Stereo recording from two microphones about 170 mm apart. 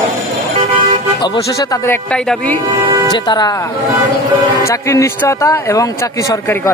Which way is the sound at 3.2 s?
25° left (ahead or behind).